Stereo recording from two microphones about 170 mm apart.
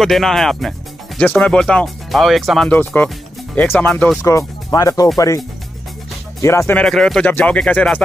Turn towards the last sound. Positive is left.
turn(degrees=5)  # may be behind; listen again after turning